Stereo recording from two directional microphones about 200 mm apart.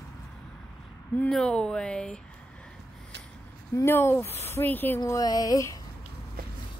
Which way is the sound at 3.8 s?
10° left (ahead or behind).